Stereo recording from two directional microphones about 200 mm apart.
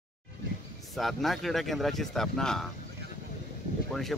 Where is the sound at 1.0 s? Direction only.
Centre (ahead or behind).